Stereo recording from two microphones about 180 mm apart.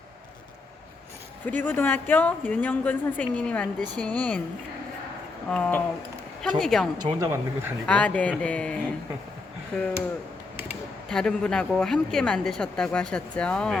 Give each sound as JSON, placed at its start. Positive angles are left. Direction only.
{"t": 1.5, "sound": "a woman's voice", "side_deg": 10}
{"t": 5.5, "sound": "a woman's voice", "side_deg": 5}
{"t": 7.0, "sound": "speech", "side_deg": -20}
{"t": 7.9, "sound": "a woman's voice", "side_deg": 5}
{"t": 11.1, "sound": "a woman's voice", "side_deg": 5}